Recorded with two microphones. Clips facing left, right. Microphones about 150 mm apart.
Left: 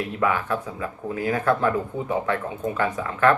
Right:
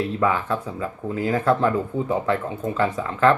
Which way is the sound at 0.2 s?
30° right (ahead or behind).